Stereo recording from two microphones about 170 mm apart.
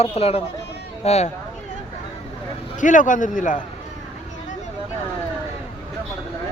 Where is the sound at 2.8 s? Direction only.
50° left (ahead or behind).